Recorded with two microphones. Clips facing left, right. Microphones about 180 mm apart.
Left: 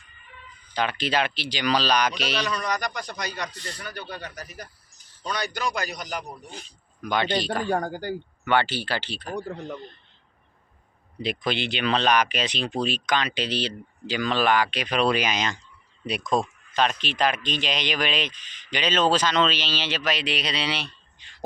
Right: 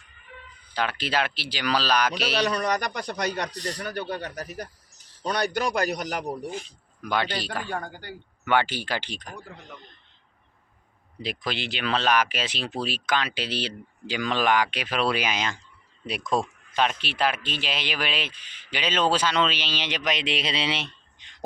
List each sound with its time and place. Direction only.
0.7 s speech: 5° right (ahead or behind)
2.5 s a man's voice: 60° right (ahead or behind)
3.5 s speech: 35° right (ahead or behind)
3.8 s a man's voice: 60° right (ahead or behind)
7.0 s speech: 5° right (ahead or behind)
7.7 s speech: 40° left (ahead or behind)
8.4 s speech: 10° right (ahead or behind)
9.3 s a man's voice: 35° left (ahead or behind)
11.2 s speech: centre (ahead or behind); by 21.4 s 20° right (ahead or behind)